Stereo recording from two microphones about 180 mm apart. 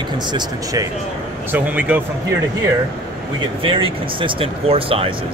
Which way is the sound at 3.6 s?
30° right (ahead or behind).